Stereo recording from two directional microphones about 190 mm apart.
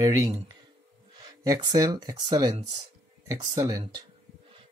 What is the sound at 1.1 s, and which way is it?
Speech, 20° right (ahead or behind).